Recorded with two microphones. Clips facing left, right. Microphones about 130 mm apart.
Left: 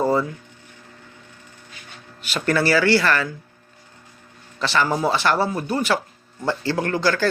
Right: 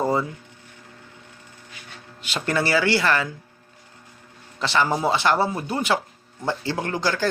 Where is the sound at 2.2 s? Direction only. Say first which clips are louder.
Left 3 dB; 20° right (ahead or behind).